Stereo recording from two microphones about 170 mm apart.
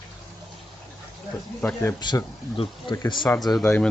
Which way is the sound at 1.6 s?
10° left (ahead or behind).